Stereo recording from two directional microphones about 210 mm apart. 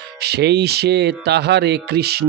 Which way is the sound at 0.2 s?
50° right (ahead or behind).